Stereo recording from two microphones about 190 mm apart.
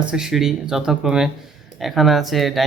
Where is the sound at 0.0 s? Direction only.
5° right (ahead or behind).